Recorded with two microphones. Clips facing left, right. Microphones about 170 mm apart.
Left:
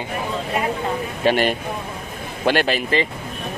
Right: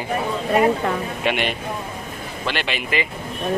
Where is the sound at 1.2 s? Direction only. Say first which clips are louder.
Left 6 dB; 40° left (ahead or behind).